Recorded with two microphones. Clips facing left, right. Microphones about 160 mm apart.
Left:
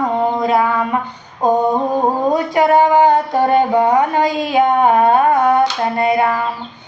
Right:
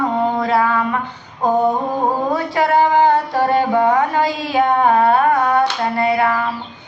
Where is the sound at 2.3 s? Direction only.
15° left (ahead or behind).